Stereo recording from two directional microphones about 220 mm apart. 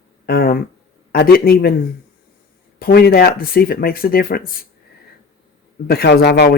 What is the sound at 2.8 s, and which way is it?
Speech, 45° left (ahead or behind).